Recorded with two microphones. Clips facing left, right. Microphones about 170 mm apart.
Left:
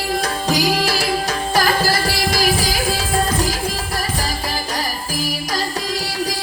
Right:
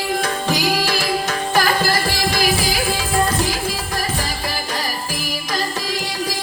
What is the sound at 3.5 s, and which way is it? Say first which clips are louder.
Music: even; 40° left (ahead or behind).